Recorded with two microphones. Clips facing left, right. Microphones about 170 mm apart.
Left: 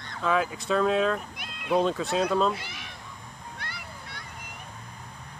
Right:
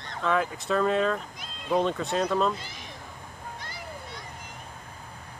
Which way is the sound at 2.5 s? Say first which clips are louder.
Left 1 dB; 65° left (ahead or behind).